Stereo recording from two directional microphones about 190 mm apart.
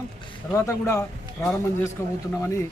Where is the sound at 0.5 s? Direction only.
15° left (ahead or behind).